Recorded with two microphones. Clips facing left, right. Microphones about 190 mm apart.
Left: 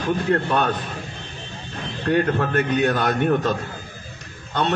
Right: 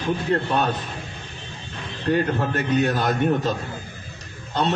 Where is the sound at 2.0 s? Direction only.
55° left (ahead or behind).